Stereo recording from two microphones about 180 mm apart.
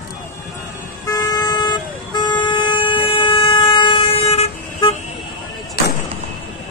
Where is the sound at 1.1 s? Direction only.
20° left (ahead or behind).